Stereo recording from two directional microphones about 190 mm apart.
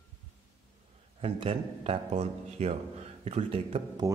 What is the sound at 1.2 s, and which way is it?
Speech, 30° right (ahead or behind).